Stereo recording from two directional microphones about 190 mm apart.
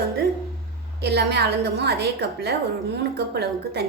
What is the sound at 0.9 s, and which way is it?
A woman's voice, 60° right (ahead or behind).